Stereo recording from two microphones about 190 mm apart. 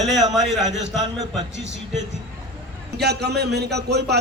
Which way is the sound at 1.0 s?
20° right (ahead or behind).